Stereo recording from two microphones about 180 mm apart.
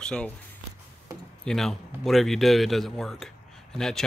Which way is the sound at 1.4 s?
Centre (ahead or behind).